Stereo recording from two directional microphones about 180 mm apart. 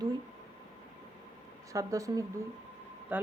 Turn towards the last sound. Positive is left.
turn(degrees=-10)  # may be behind; listen again after turning